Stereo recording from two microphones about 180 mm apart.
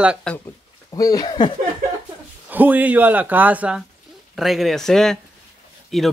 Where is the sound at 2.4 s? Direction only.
10° right (ahead or behind).